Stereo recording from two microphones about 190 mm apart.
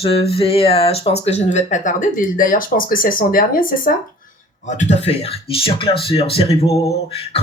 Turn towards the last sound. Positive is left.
turn(degrees=30)  # may be behind; listen again after turning